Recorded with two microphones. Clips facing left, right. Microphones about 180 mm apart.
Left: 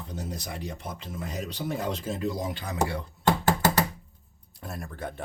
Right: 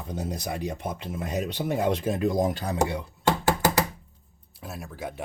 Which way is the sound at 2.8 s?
15° right (ahead or behind).